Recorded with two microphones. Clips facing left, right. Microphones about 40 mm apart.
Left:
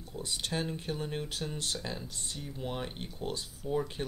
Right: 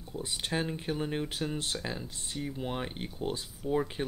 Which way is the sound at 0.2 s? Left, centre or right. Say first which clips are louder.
Right 2 dB; centre.